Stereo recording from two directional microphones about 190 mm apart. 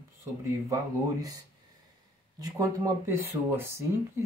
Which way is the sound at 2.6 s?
15° right (ahead or behind).